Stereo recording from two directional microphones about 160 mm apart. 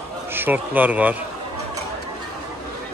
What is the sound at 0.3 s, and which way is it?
Speech, 10° right (ahead or behind).